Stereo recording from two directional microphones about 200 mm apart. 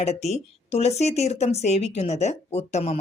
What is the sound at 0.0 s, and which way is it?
Speech, 35° left (ahead or behind).